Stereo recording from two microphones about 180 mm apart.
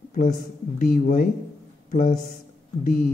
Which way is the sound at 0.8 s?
50° left (ahead or behind).